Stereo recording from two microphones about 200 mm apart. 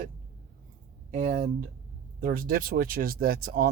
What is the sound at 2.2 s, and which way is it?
Speech, 45° right (ahead or behind).